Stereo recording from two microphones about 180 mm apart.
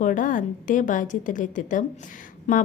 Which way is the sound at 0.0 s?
45° left (ahead or behind).